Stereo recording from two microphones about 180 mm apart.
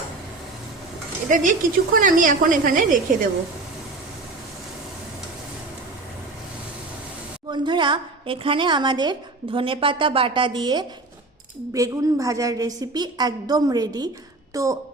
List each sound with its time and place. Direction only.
1.3 s a woman's voice: 50° right (ahead or behind)
7.4 s a woman's voice: 25° right (ahead or behind)